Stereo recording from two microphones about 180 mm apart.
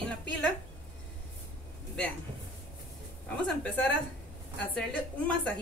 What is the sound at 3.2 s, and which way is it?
Speech, 10° left (ahead or behind).